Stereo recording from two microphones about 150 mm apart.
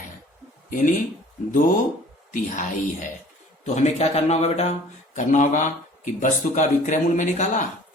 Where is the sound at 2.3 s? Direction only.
60° left (ahead or behind).